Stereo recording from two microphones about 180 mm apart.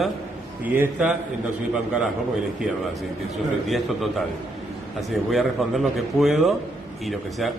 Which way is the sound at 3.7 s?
Centre (ahead or behind).